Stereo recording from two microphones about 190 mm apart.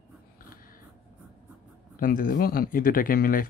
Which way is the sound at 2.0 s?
50° left (ahead or behind).